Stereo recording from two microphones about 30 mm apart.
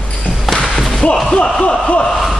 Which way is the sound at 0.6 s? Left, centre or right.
Centre.